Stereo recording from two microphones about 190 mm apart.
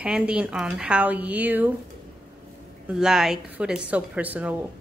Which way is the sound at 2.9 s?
Centre (ahead or behind).